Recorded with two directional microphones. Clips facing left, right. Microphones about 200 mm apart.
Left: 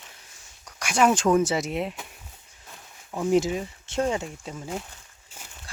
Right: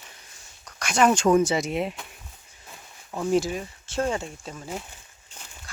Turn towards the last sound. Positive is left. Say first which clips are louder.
# left 1 dB
turn(degrees=5)  # may be behind; listen again after turning